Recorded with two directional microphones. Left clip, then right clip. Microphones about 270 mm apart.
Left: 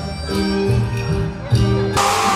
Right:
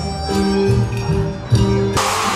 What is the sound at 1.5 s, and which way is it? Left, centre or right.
Music, centre.